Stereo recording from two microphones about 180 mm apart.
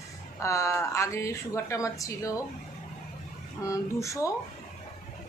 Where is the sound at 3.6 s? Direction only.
20° left (ahead or behind).